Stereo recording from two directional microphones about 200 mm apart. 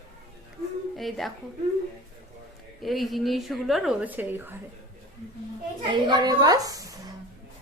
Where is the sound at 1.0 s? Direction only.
Centre (ahead or behind).